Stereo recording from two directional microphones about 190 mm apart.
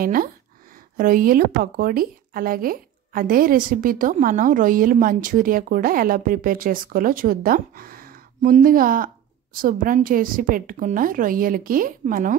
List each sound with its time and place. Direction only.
0.0 s speech: 50° right (ahead or behind)